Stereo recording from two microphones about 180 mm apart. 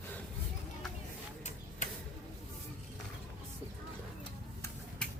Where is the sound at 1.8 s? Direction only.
45° left (ahead or behind).